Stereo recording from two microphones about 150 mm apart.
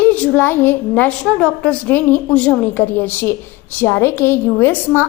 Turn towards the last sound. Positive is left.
turn(degrees=15)  # may be behind; listen again after turning